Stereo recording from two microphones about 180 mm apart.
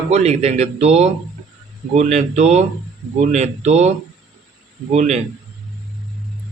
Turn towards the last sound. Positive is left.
turn(degrees=-40)  # may be behind; listen again after turning